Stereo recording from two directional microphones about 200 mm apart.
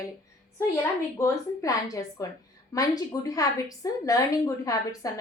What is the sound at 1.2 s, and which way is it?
A woman's voice, 15° left (ahead or behind).